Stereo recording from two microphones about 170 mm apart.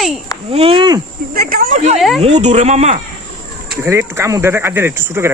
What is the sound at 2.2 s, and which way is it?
Speech, 40° right (ahead or behind).